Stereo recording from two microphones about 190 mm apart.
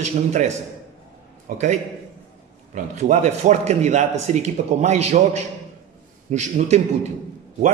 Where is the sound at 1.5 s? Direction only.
40° right (ahead or behind).